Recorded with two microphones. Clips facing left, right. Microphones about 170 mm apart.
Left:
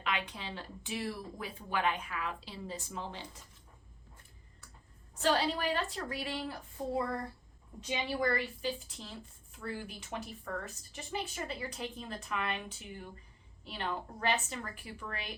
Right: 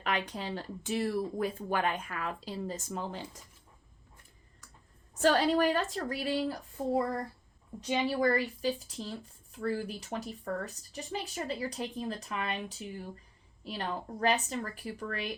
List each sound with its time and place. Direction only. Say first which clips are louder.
0.0 s speech: right 4 dB; 40° right (ahead or behind)
5.1 s a woman's voice: right 5 dB; 45° right (ahead or behind)